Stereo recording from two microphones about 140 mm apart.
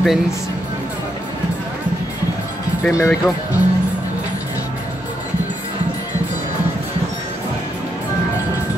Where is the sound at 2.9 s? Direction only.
20° left (ahead or behind).